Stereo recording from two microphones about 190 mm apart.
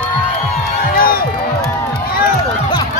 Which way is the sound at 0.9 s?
50° left (ahead or behind).